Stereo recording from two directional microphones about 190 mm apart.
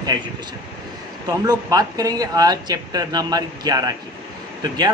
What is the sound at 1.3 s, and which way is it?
Speech, 20° right (ahead or behind).